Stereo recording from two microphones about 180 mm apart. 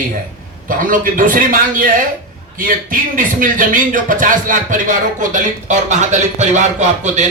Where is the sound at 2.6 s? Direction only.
50° right (ahead or behind).